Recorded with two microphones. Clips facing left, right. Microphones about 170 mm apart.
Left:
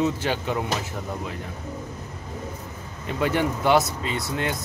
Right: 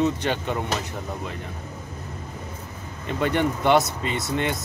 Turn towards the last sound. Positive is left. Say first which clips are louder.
# right 2 dB
turn(degrees=0)  # may be behind; listen again after turning